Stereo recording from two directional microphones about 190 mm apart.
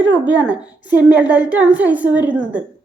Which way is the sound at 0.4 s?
5° right (ahead or behind).